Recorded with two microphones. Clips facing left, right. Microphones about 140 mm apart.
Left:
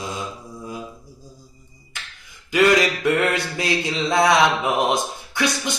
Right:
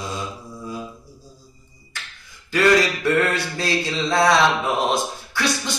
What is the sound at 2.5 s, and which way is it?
Speech, 15° left (ahead or behind).